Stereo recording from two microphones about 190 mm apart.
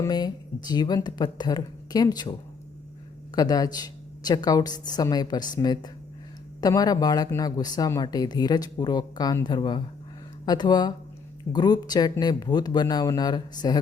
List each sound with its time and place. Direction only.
0.0 s speech: 20° left (ahead or behind)
3.3 s speech: 20° left (ahead or behind)